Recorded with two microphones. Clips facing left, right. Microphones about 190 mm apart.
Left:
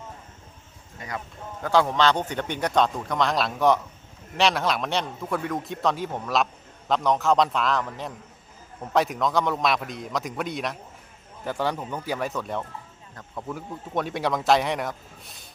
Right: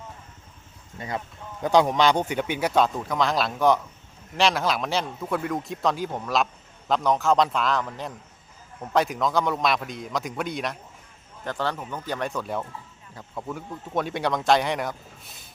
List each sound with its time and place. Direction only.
0.9 s a man's voice: 25° right (ahead or behind); by 10.8 s centre (ahead or behind)
11.4 s a man's voice: 10° left (ahead or behind)